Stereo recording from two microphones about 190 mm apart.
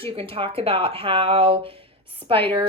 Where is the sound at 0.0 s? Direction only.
30° right (ahead or behind).